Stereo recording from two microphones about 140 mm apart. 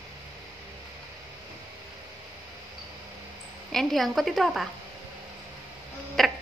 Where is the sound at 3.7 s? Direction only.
Centre (ahead or behind).